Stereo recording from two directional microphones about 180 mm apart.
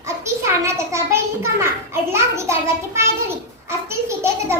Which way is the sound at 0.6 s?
15° right (ahead or behind).